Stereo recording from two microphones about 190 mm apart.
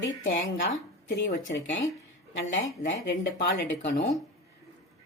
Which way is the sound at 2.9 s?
70° left (ahead or behind).